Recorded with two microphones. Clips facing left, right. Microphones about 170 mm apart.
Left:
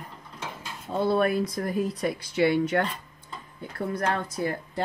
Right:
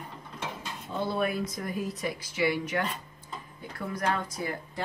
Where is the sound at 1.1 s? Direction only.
55° left (ahead or behind).